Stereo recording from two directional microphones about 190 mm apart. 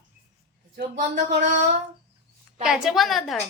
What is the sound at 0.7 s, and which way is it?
Speech, 45° right (ahead or behind).